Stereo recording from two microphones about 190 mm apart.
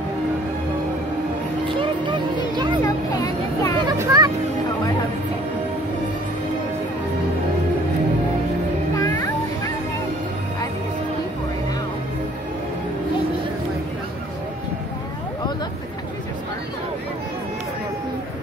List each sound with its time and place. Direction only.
1.8 s music: 25° right (ahead or behind)
2.8 s vehicle: 15° left (ahead or behind)
3.8 s music: 20° right (ahead or behind)
8.9 s music: 20° left (ahead or behind)